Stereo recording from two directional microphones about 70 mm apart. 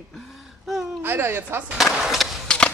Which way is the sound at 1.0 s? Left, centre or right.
Right.